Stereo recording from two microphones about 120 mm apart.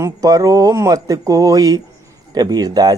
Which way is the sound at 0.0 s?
30° right (ahead or behind).